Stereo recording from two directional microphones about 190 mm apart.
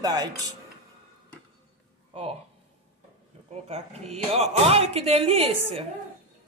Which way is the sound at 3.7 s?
35° right (ahead or behind).